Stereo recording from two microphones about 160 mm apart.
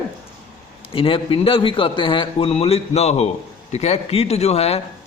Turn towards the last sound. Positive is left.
turn(degrees=40)  # may be behind; listen again after turning